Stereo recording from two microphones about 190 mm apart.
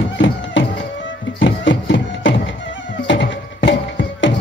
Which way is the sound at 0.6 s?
75° left (ahead or behind).